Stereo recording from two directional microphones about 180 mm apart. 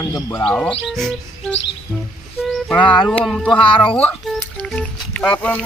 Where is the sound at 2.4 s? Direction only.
Centre (ahead or behind).